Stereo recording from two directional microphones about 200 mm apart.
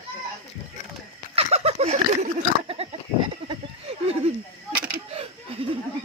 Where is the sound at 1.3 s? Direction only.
30° right (ahead or behind).